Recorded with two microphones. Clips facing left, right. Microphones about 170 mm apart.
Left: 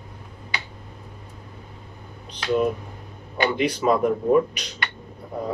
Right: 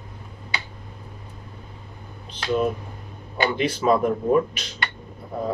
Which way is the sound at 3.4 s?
15° left (ahead or behind).